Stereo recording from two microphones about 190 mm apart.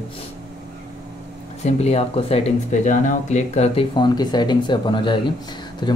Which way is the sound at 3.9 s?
25° left (ahead or behind).